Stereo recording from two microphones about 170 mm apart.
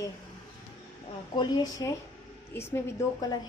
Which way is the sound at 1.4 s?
25° left (ahead or behind).